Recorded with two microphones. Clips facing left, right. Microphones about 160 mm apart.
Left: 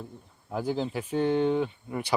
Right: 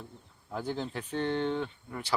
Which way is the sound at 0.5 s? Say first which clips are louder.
Left 5 dB; 5° left (ahead or behind).